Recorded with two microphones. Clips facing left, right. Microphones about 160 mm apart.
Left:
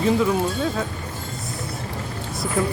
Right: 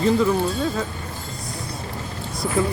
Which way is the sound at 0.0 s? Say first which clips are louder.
Right 1 dB; 5° left (ahead or behind).